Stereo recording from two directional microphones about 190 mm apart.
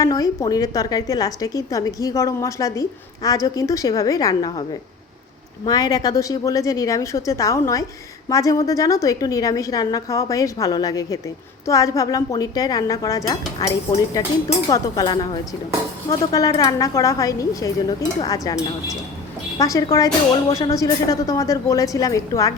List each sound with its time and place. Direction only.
0.0 s a woman's voice: 20° left (ahead or behind)
5.6 s a woman's voice: 20° left (ahead or behind)